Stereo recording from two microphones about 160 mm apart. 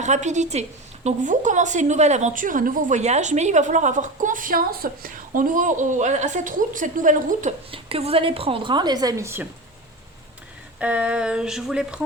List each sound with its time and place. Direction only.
0.0 s a woman's voice: 45° right (ahead or behind)
7.7 s a woman's voice: 35° right (ahead or behind); by 9.5 s 15° right (ahead or behind)
10.8 s speech: 10° right (ahead or behind)